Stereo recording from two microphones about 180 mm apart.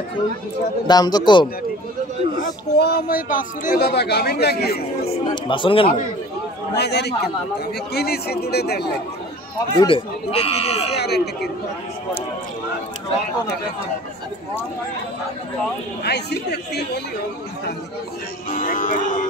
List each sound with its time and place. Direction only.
0.8 s a man's voice: 20° left (ahead or behind)
2.8 s speech: 60° left (ahead or behind)
5.3 s speech: 25° left (ahead or behind)
6.7 s a woman's voice: 65° left (ahead or behind)
9.8 s speech: 30° left (ahead or behind)
11.0 s speech: 65° left (ahead or behind)
16.0 s a woman's voice: 65° left (ahead or behind)
18.5 s speech: 45° left (ahead or behind)